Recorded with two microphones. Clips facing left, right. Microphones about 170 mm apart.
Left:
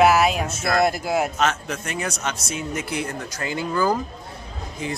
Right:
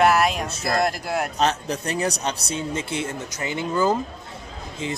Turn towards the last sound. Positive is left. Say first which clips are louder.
# even
turn(degrees=-25)  # may be behind; listen again after turning